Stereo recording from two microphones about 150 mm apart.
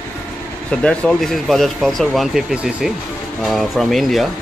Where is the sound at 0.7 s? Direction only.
5° left (ahead or behind).